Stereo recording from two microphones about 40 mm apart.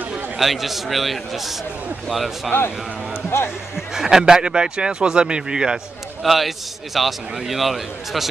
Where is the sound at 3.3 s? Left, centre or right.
Left.